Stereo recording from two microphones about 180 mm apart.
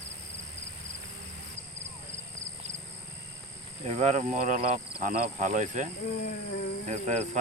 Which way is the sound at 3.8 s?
40° right (ahead or behind).